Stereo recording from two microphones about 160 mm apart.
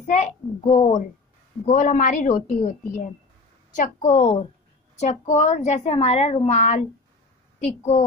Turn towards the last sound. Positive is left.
turn(degrees=40)  # may be behind; listen again after turning